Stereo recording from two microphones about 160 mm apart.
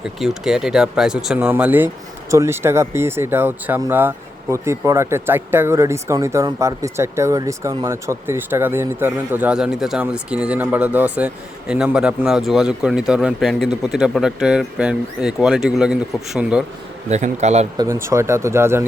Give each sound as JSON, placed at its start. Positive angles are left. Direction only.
{"t": 0.2, "sound": "speech", "side_deg": -5}
{"t": 17.1, "sound": "speech", "side_deg": -45}
{"t": 17.7, "sound": "speech", "side_deg": -15}